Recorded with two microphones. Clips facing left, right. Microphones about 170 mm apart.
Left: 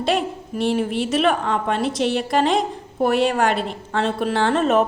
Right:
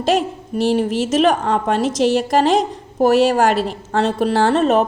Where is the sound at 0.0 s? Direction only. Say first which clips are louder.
Right 4 dB; 40° right (ahead or behind).